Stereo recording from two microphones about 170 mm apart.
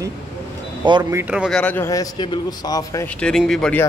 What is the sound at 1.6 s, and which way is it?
Speech, 10° left (ahead or behind).